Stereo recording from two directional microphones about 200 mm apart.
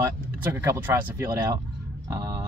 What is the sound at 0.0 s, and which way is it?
Speech, 15° right (ahead or behind).